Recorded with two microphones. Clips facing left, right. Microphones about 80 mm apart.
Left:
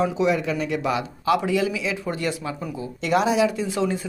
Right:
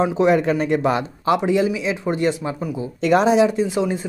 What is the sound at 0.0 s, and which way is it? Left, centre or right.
A man's voice, right.